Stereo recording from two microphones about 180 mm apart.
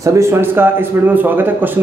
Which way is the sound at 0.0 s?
15° right (ahead or behind).